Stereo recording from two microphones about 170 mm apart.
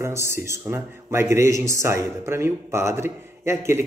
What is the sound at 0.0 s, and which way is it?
A man's voice, 15° right (ahead or behind).